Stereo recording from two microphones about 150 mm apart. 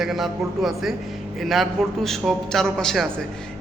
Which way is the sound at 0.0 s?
Centre (ahead or behind).